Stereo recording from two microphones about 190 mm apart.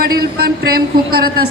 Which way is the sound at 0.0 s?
50° right (ahead or behind).